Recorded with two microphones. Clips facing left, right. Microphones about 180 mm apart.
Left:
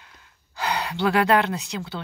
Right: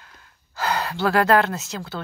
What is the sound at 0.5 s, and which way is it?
Speech, 40° right (ahead or behind).